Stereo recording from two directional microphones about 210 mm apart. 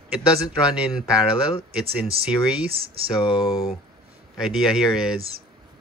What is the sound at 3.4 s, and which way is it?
Speech, 15° left (ahead or behind).